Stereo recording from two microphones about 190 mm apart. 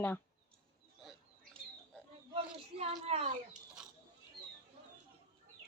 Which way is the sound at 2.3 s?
30° right (ahead or behind).